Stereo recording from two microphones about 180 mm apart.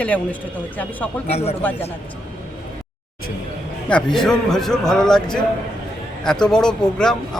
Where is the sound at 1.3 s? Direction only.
35° left (ahead or behind).